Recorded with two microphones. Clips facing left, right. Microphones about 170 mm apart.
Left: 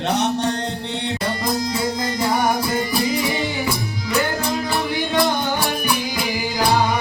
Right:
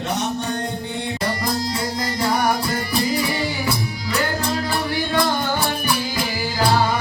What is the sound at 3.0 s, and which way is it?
Music, 20° left (ahead or behind).